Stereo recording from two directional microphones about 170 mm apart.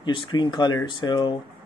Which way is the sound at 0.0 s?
30° left (ahead or behind).